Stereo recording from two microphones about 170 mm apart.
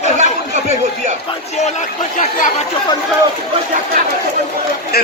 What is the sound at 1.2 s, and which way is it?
Speech, 40° left (ahead or behind).